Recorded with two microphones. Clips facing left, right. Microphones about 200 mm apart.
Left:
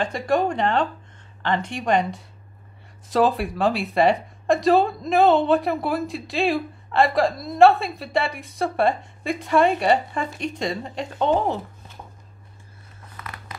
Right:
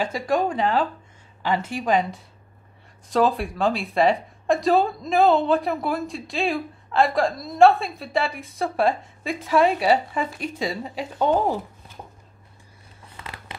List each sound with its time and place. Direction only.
0.0 s speech: centre (ahead or behind)
13.1 s scissors: 25° right (ahead or behind)